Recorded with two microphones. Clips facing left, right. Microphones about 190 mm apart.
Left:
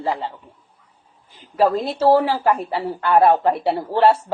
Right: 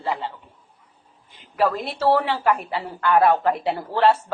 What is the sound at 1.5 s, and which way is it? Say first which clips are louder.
A woman's voice: left 4 dB; 30° left (ahead or behind).